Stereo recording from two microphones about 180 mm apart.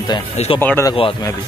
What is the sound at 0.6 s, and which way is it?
Speech, 15° left (ahead or behind).